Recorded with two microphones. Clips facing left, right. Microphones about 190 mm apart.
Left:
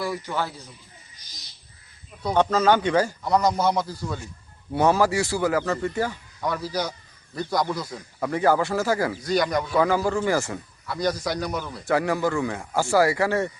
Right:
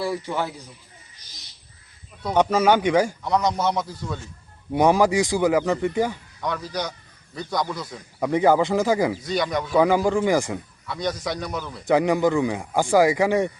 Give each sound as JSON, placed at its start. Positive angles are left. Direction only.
{"t": 0.0, "sound": "a man's voice", "side_deg": -30}
{"t": 2.3, "sound": "speech", "side_deg": -10}
{"t": 3.2, "sound": "a man's voice", "side_deg": 0}
{"t": 4.7, "sound": "speech", "side_deg": -15}
{"t": 6.4, "sound": "a man's voice", "side_deg": 5}
{"t": 8.2, "sound": "speech", "side_deg": -15}
{"t": 9.2, "sound": "a man's voice", "side_deg": 0}
{"t": 9.7, "sound": "speech", "side_deg": -15}
{"t": 10.8, "sound": "a man's voice", "side_deg": 0}
{"t": 11.9, "sound": "speech", "side_deg": -20}